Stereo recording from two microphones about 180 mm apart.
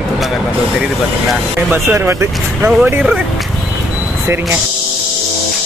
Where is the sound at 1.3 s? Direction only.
10° right (ahead or behind).